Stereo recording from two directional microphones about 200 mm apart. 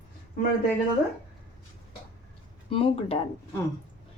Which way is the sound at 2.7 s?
30° left (ahead or behind).